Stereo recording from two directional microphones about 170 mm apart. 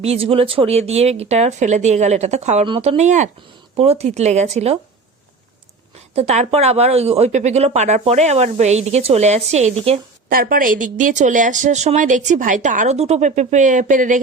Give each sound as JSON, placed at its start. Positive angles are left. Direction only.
{"t": 0.0, "sound": "speech", "side_deg": -35}
{"t": 6.1, "sound": "speech", "side_deg": -40}
{"t": 10.2, "sound": "speech", "side_deg": -60}